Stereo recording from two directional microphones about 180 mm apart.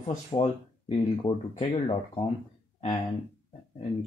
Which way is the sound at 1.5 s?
30° left (ahead or behind).